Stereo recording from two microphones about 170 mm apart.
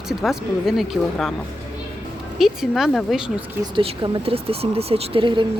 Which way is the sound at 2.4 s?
Centre (ahead or behind).